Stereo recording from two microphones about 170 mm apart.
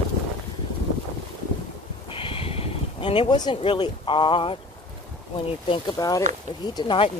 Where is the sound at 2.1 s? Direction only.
30° left (ahead or behind).